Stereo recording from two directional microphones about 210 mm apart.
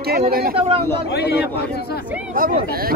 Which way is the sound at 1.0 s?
50° left (ahead or behind).